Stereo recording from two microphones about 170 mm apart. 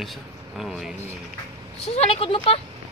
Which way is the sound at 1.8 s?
35° left (ahead or behind).